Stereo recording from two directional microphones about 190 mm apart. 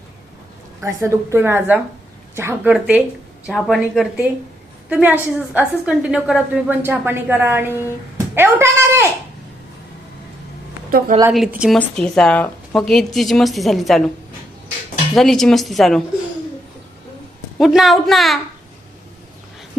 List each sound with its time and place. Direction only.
0.8 s a woman's voice: 15° right (ahead or behind)
10.9 s a woman's voice: 50° right (ahead or behind)
11.3 s speech: centre (ahead or behind)
15.1 s speech: centre (ahead or behind)
17.6 s speech: centre (ahead or behind)